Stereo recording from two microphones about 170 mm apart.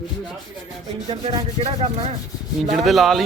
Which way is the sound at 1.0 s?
30° right (ahead or behind).